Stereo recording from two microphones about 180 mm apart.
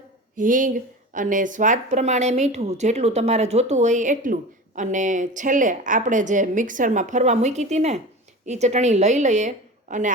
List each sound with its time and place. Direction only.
0.3 s a woman's voice: 45° right (ahead or behind)